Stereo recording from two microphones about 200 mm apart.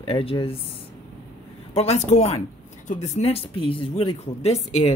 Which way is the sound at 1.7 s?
35° left (ahead or behind).